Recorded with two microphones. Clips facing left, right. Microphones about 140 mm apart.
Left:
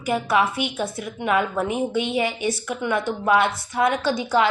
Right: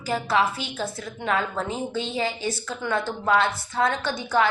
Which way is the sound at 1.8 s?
65° left (ahead or behind).